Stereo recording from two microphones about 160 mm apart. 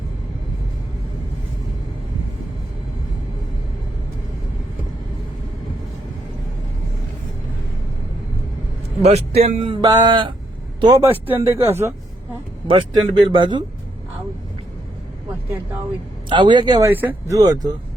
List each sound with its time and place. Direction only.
9.0 s a man's voice: 40° right (ahead or behind)
9.8 s speech: 25° right (ahead or behind)
11.1 s speech: 15° right (ahead or behind)
12.6 s speech: 30° right (ahead or behind)
16.3 s speech: 30° right (ahead or behind)
16.9 s speech: 10° right (ahead or behind)